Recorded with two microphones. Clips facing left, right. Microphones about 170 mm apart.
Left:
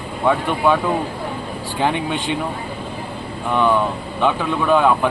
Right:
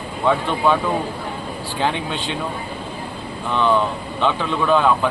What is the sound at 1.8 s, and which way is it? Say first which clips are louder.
Speech: left 2 dB; 15° left (ahead or behind).